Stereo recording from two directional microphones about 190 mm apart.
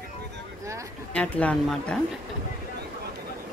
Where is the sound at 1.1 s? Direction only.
5° left (ahead or behind).